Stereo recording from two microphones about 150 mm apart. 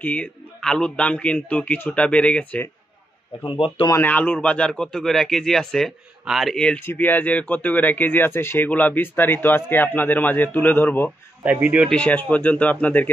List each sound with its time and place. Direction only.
0.0 s a man's voice: 10° left (ahead or behind)
3.4 s speech: 35° left (ahead or behind)
3.9 s a man's voice: 10° left (ahead or behind)
11.4 s speech: 10° right (ahead or behind)
11.9 s a man's voice: 10° left (ahead or behind)